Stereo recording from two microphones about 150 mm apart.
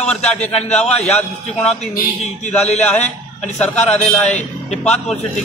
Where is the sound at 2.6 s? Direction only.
50° left (ahead or behind).